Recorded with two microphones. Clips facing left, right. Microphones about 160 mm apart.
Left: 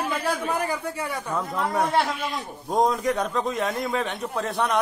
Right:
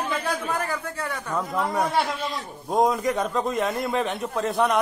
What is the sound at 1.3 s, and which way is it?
A man's voice, centre (ahead or behind).